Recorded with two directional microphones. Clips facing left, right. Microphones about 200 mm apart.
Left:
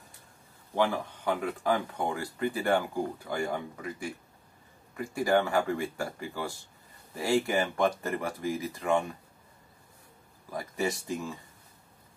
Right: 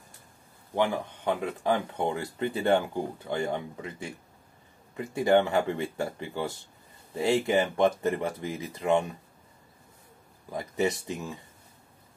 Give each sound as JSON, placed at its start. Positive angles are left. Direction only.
{"t": 0.7, "sound": "speech", "side_deg": -15}
{"t": 10.5, "sound": "speech", "side_deg": -20}